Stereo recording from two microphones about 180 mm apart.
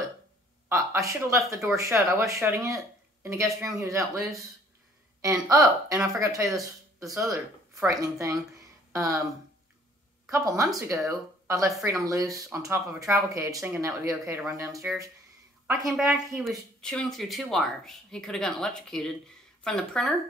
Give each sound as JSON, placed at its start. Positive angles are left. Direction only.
{"t": 0.7, "sound": "a sound", "side_deg": -15}
{"t": 1.8, "sound": "speech", "side_deg": -15}
{"t": 5.2, "sound": "speech", "side_deg": -15}
{"t": 10.3, "sound": "speech", "side_deg": -15}
{"t": 15.8, "sound": "speech", "side_deg": -5}